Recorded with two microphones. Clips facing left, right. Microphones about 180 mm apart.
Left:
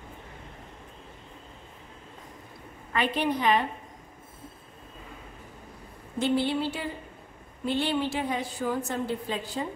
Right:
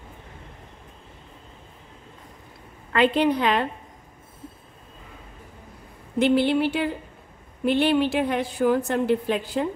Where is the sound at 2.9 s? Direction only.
75° right (ahead or behind).